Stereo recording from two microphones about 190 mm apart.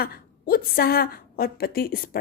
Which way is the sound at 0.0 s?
50° left (ahead or behind).